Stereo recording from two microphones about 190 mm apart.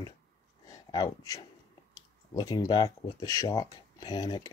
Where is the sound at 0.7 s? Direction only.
20° left (ahead or behind).